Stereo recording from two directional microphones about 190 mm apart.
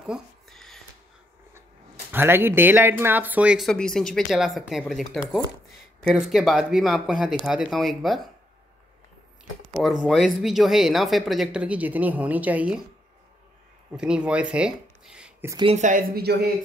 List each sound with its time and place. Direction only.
0.0 s a sound: centre (ahead or behind)
2.1 s speech: 10° right (ahead or behind)
9.8 s speech: centre (ahead or behind)
13.9 s speech: 5° right (ahead or behind)
15.5 s speech: 30° right (ahead or behind); by 16.4 s 55° right (ahead or behind)